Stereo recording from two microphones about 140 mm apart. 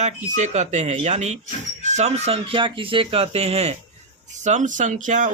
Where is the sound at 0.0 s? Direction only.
60° right (ahead or behind).